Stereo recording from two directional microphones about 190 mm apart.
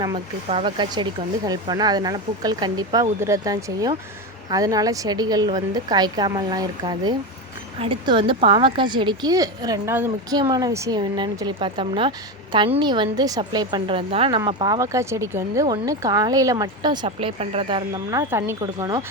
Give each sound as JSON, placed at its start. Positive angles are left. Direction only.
{"t": 0.4, "sound": "a woman's voice", "side_deg": -30}